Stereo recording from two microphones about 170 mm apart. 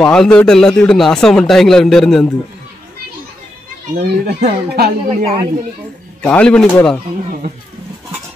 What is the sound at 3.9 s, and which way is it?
Speech, 75° right (ahead or behind).